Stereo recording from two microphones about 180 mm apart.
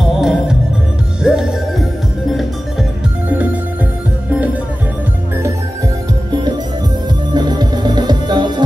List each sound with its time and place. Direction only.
0.2 s music: 5° right (ahead or behind)
7.3 s music: 25° right (ahead or behind)